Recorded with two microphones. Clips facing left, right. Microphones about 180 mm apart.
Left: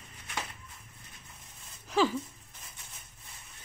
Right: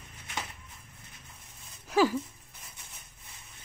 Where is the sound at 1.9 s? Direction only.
10° right (ahead or behind).